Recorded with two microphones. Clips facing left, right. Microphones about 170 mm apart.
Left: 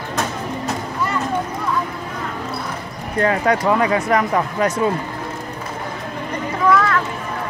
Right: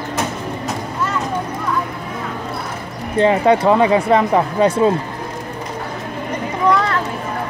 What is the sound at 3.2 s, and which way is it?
Speech, 25° right (ahead or behind).